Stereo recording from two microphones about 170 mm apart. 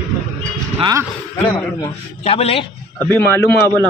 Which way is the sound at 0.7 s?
25° right (ahead or behind).